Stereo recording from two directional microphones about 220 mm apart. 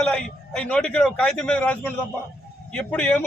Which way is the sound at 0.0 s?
5° left (ahead or behind).